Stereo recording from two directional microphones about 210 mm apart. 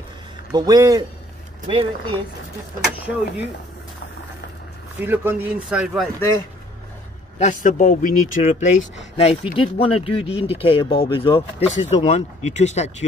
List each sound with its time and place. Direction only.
0.5 s speech: 20° right (ahead or behind)
5.0 s speech: 10° right (ahead or behind)
6.1 s speech: 15° left (ahead or behind)
7.3 s speech: 35° left (ahead or behind)